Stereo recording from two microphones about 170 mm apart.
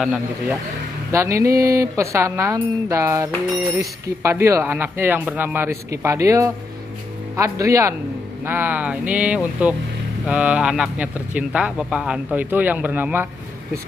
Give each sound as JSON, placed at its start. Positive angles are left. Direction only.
{"t": 0.0, "sound": "a man's voice", "side_deg": -5}
{"t": 1.1, "sound": "speech", "side_deg": -15}